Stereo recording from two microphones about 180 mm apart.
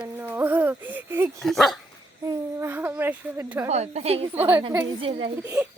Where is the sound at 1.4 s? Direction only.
Centre (ahead or behind).